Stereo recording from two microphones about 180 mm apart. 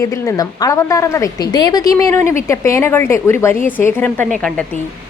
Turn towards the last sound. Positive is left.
turn(degrees=5)  # may be behind; listen again after turning